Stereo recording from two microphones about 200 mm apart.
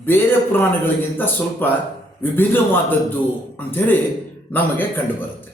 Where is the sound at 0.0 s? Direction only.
10° left (ahead or behind).